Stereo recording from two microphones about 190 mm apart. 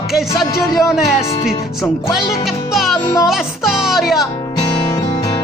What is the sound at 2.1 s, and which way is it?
Music, centre (ahead or behind).